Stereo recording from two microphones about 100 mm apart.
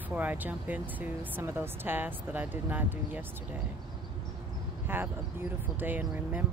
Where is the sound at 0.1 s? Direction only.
15° right (ahead or behind).